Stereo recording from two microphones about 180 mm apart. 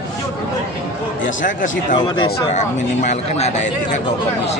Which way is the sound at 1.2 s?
45° left (ahead or behind).